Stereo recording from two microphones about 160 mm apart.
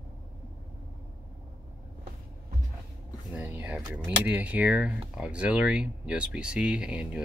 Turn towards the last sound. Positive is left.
turn(degrees=-5)  # may be behind; listen again after turning